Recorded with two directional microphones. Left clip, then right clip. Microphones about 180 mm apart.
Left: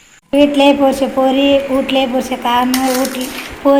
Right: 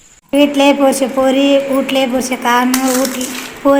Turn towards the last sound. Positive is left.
turn(degrees=-5)  # may be behind; listen again after turning